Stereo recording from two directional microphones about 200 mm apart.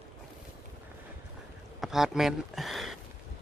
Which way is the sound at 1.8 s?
Centre (ahead or behind).